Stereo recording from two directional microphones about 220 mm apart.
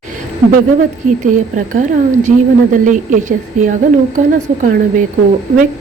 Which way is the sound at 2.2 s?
35° right (ahead or behind).